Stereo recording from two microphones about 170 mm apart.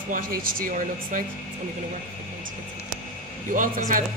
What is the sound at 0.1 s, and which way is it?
Speech, 55° right (ahead or behind).